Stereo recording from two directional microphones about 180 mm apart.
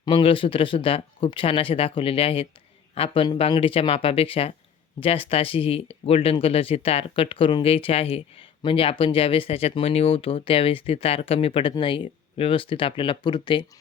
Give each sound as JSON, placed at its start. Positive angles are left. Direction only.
{"t": 0.0, "sound": "speech", "side_deg": 25}